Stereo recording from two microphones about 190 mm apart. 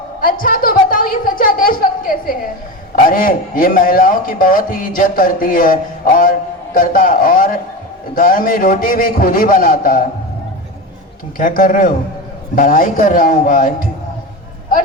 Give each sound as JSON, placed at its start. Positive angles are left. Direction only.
{"t": 0.2, "sound": "a woman's voice", "side_deg": 45}
{"t": 11.3, "sound": "a man's voice", "side_deg": 45}